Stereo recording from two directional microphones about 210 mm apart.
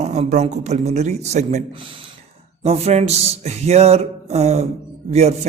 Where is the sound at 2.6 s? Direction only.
30° right (ahead or behind).